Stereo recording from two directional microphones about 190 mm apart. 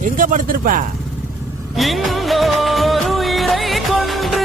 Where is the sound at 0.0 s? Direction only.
45° right (ahead or behind).